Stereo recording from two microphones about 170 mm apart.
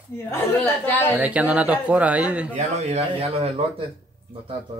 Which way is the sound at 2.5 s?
40° right (ahead or behind).